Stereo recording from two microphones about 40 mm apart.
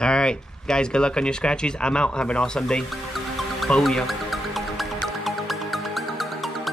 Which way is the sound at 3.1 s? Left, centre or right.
Centre.